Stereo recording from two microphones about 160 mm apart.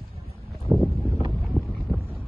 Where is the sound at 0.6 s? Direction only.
10° left (ahead or behind).